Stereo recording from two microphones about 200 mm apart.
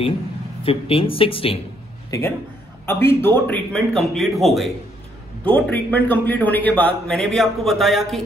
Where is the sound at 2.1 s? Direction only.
15° left (ahead or behind).